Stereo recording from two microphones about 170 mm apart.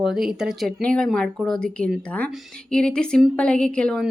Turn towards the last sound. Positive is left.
turn(degrees=5)  # may be behind; listen again after turning